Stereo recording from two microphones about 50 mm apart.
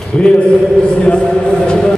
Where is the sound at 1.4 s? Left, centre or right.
Centre.